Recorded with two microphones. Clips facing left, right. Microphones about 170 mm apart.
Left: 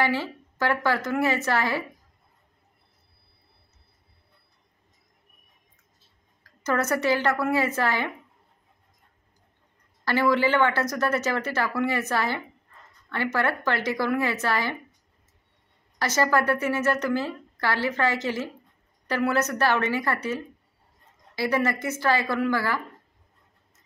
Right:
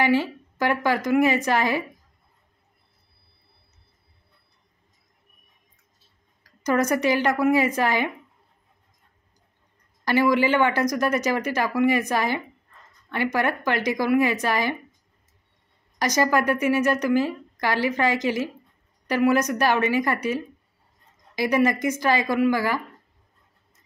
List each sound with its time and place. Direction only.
0.0 s a woman's voice: 15° right (ahead or behind)
6.6 s a woman's voice: 15° right (ahead or behind)
10.0 s a woman's voice: 15° right (ahead or behind)
16.0 s a woman's voice: 15° right (ahead or behind)